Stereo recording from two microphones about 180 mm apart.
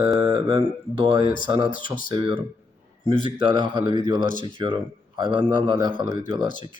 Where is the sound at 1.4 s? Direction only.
25° right (ahead or behind).